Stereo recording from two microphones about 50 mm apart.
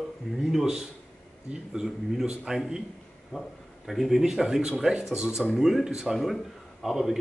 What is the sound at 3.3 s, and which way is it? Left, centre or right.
Speech, centre.